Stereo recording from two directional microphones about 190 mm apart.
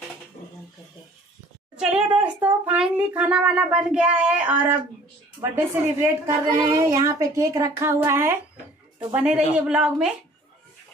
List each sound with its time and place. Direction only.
1.8 s speech: 5° right (ahead or behind)
5.9 s a woman's voice: 15° right (ahead or behind)